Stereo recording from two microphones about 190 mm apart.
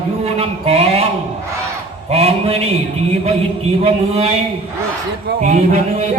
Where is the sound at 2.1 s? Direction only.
30° right (ahead or behind).